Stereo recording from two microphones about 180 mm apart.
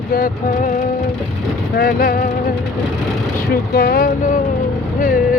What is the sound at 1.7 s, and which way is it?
Speech, 55° left (ahead or behind).